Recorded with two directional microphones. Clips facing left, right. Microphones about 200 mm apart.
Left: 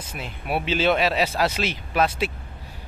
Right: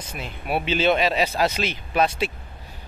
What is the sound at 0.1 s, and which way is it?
Speech, centre (ahead or behind).